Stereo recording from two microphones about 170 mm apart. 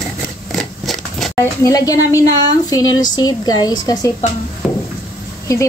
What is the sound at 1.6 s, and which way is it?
Speech, 20° left (ahead or behind).